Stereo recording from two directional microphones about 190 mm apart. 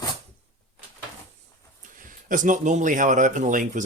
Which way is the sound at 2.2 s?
45° right (ahead or behind).